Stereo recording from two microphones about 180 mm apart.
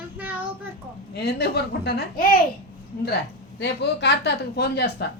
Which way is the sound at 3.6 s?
70° left (ahead or behind).